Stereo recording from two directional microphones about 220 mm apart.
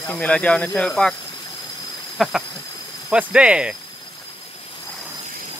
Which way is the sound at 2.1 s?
Centre (ahead or behind).